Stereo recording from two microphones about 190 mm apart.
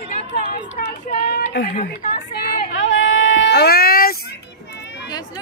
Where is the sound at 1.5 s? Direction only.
55° left (ahead or behind).